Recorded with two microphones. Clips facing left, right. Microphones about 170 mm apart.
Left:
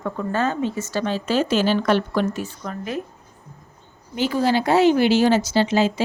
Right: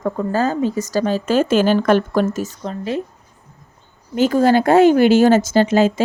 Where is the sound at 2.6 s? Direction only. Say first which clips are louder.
Right 5 dB; 30° right (ahead or behind).